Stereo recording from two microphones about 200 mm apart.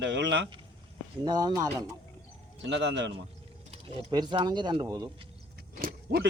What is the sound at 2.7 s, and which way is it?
Speech, 60° right (ahead or behind).